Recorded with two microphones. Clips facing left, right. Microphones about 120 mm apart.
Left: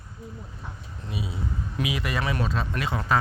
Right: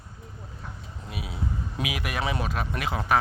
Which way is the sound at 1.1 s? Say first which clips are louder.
Left 4 dB; 70° right (ahead or behind).